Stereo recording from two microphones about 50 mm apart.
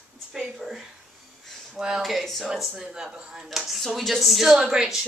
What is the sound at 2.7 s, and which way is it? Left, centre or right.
Speech, centre.